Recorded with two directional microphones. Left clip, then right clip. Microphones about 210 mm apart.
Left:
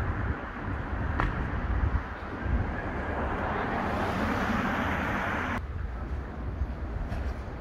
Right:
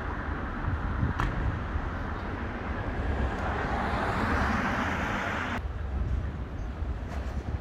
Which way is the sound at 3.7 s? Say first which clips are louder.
Even; 50° left (ahead or behind).